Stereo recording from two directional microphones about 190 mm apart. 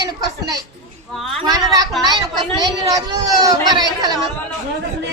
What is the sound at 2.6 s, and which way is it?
Speech, 20° right (ahead or behind).